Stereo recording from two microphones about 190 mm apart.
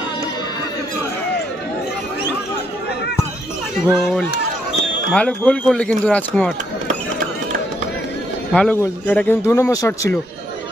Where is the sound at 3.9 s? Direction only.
Centre (ahead or behind).